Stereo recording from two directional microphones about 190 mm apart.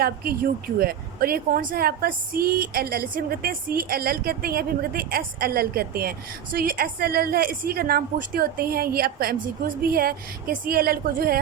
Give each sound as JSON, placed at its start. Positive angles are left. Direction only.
{"t": 0.0, "sound": "a woman's voice", "side_deg": -50}